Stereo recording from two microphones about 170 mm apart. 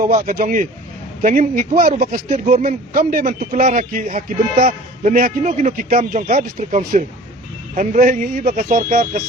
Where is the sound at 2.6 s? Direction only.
55° right (ahead or behind).